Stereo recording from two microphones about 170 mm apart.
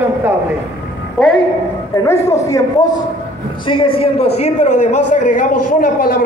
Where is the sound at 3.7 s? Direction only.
30° left (ahead or behind).